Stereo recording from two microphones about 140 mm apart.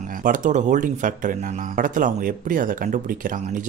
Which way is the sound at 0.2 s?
70° right (ahead or behind).